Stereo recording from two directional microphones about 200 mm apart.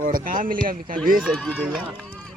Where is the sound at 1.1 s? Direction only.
5° left (ahead or behind).